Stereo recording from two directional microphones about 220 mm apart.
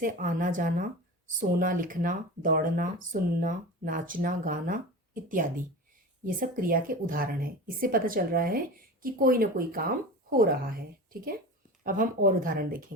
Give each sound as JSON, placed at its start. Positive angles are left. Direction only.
{"t": 0.0, "sound": "a woman's voice", "side_deg": -35}
{"t": 6.2, "sound": "a woman's voice", "side_deg": -40}